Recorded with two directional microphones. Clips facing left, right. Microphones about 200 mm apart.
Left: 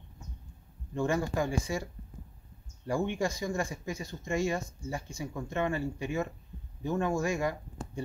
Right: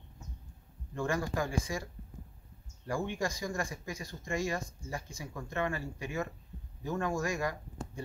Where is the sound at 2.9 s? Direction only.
25° left (ahead or behind).